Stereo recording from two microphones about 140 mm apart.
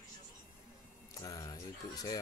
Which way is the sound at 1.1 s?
25° left (ahead or behind).